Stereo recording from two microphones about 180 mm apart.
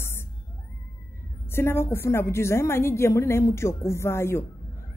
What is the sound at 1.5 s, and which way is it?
Speech, 15° left (ahead or behind).